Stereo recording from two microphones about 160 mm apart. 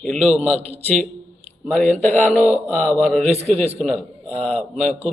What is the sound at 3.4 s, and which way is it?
Speech, 40° right (ahead or behind).